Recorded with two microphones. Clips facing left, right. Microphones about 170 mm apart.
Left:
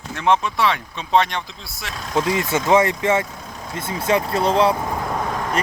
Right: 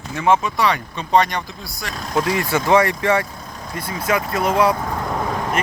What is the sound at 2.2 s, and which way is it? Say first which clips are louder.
Speech: even; 20° left (ahead or behind).